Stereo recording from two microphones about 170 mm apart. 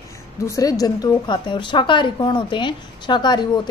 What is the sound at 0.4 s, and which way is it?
A woman's voice, 20° left (ahead or behind).